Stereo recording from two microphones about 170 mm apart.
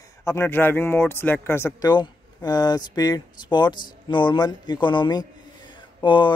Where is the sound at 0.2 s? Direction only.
15° left (ahead or behind).